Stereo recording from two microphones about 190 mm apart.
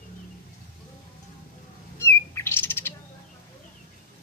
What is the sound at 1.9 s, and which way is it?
Bird, 15° left (ahead or behind).